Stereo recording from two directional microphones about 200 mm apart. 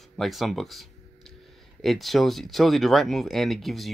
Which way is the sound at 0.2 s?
Centre (ahead or behind).